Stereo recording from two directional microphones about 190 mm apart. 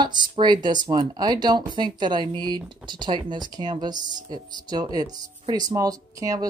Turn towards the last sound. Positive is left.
turn(degrees=-15)  # may be behind; listen again after turning